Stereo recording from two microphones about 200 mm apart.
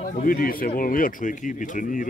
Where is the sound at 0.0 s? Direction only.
45° left (ahead or behind).